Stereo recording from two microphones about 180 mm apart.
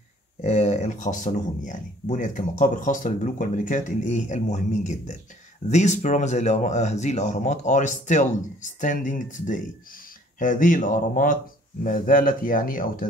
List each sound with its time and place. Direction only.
0.4 s speech: 35° left (ahead or behind)